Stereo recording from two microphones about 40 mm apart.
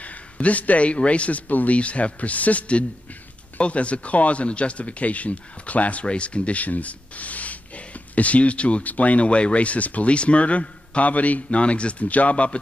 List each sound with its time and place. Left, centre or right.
0.0 s speech: left
1.5 s speech: left
1.8 s speech: left